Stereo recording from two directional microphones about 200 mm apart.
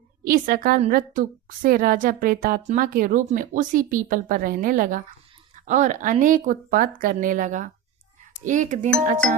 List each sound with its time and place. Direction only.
0.3 s a woman's voice: 45° right (ahead or behind)